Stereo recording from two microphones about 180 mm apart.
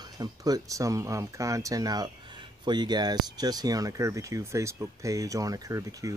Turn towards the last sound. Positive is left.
turn(degrees=-20)  # may be behind; listen again after turning